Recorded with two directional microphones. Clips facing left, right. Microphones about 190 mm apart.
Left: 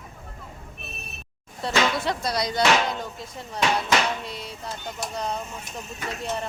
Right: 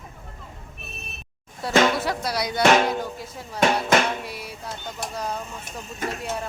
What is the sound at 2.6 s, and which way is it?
Speech, 50° right (ahead or behind).